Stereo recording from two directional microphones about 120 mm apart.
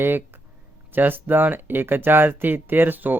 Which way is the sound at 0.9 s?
15° right (ahead or behind).